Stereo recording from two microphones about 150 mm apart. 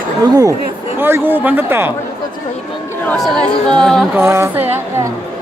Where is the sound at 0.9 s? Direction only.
15° right (ahead or behind).